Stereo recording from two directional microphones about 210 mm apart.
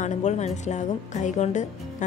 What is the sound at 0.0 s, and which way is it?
A woman's voice, 35° left (ahead or behind).